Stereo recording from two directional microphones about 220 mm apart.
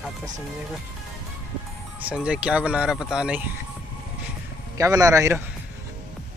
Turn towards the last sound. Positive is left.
turn(degrees=-15)  # may be behind; listen again after turning